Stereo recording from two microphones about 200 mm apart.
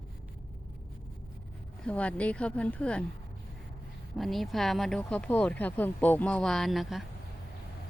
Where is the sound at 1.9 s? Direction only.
5° left (ahead or behind).